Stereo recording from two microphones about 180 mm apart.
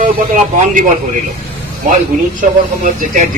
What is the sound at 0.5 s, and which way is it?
Speech, 45° right (ahead or behind).